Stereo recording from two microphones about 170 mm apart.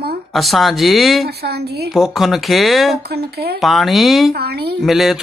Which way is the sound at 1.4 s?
70° right (ahead or behind).